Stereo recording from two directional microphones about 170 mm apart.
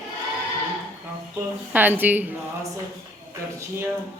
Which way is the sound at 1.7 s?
10° right (ahead or behind).